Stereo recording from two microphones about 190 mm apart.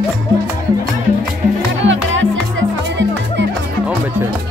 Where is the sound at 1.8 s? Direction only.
80° right.